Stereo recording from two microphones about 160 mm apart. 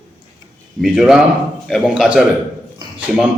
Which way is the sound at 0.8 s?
Centre (ahead or behind).